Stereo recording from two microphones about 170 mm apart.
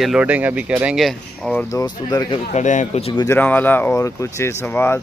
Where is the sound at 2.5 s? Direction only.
45° left (ahead or behind).